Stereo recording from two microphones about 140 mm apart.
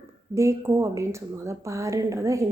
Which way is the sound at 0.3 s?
20° right (ahead or behind).